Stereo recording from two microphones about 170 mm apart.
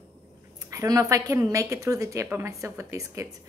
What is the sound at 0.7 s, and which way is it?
A woman's voice, 20° right (ahead or behind).